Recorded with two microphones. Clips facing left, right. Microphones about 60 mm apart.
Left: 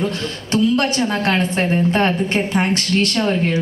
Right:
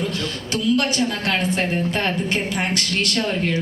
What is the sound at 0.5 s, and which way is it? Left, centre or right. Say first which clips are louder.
A woman's voice: left 4 dB; left.